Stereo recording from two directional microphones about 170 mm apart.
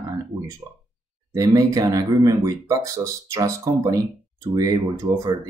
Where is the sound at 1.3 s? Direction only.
20° right (ahead or behind).